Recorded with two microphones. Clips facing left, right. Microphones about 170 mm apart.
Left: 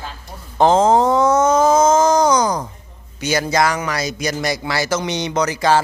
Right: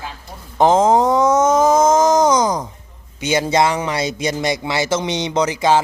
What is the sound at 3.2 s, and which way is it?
Speech, 25° right (ahead or behind).